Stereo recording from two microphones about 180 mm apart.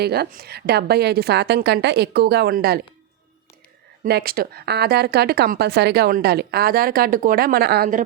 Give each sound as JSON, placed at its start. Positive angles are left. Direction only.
{"t": 0.0, "sound": "a woman's voice", "side_deg": -60}
{"t": 4.0, "sound": "a woman's voice", "side_deg": -60}